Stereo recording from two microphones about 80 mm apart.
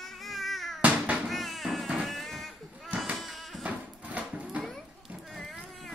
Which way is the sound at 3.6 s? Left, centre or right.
Centre.